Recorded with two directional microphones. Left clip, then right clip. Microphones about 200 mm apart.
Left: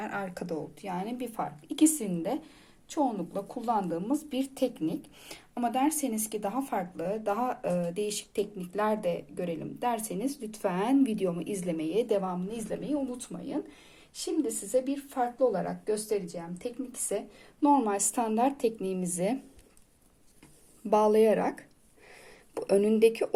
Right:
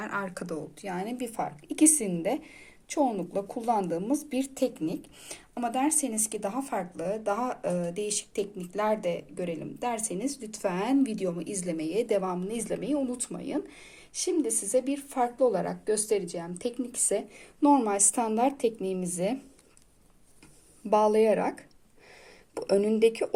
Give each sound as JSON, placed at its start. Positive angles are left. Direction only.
{"t": 0.0, "sound": "a woman's voice", "side_deg": -5}
{"t": 20.9, "sound": "speech", "side_deg": 0}